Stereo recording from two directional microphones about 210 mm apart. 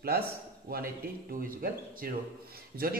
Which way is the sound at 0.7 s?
45° right (ahead or behind).